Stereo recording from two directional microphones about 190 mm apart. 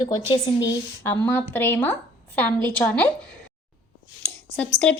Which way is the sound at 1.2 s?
10° left (ahead or behind).